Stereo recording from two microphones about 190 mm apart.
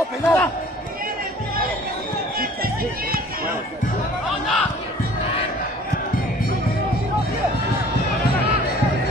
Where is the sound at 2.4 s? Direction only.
50° right (ahead or behind).